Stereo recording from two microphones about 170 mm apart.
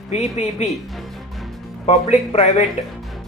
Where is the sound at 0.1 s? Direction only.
40° left (ahead or behind).